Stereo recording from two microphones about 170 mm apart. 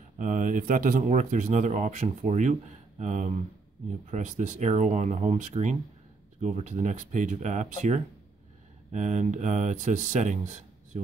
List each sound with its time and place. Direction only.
0.2 s speech: 50° right (ahead or behind)